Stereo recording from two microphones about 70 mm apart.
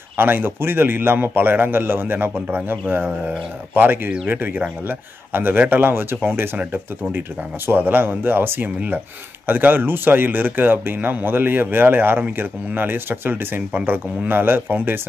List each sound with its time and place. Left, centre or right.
0.2 s a man's voice: right